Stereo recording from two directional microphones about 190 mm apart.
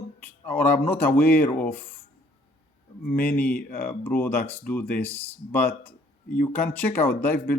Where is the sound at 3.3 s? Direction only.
10° left (ahead or behind).